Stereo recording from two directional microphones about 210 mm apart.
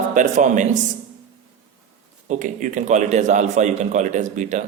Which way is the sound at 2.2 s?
35° right (ahead or behind).